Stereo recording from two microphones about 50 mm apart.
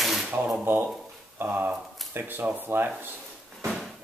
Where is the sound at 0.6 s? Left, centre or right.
Right.